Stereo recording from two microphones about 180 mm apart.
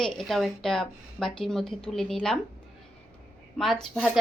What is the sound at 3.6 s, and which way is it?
Speech, centre (ahead or behind).